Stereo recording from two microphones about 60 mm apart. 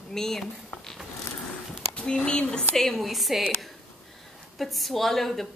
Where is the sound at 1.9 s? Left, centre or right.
Centre.